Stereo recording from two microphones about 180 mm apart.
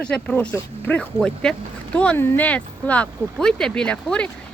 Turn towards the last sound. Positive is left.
turn(degrees=5)  # may be behind; listen again after turning